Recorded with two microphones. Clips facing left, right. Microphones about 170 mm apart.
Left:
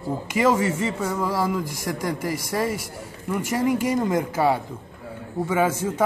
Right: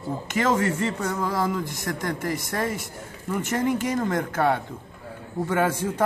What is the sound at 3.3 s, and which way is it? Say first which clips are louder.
A man's voice: left 2 dB; 10° left (ahead or behind).